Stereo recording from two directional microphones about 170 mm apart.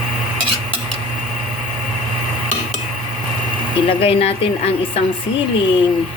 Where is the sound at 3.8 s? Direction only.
35° left (ahead or behind).